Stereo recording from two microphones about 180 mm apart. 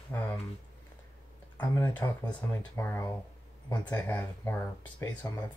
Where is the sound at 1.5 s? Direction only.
10° left (ahead or behind).